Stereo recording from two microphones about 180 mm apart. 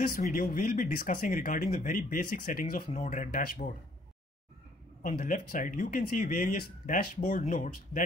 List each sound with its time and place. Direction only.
0.1 s speech: 50° left (ahead or behind)
5.0 s speech: 50° left (ahead or behind)